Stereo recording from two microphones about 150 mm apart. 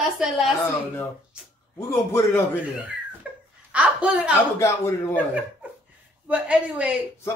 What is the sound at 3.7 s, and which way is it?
Speech, 10° right (ahead or behind).